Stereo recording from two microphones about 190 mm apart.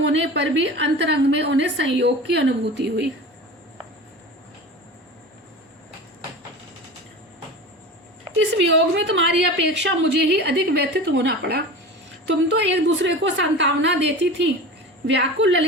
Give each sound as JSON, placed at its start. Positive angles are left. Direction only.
{"t": 0.0, "sound": "a woman's voice", "side_deg": -70}
{"t": 8.4, "sound": "a woman's voice", "side_deg": -70}
{"t": 12.3, "sound": "a woman's voice", "side_deg": -70}